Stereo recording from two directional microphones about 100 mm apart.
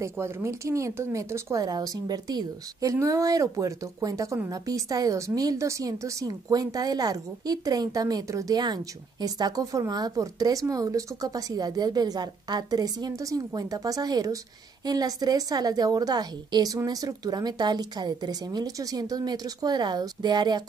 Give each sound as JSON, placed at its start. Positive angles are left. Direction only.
{"t": 0.0, "sound": "a woman's voice", "side_deg": -30}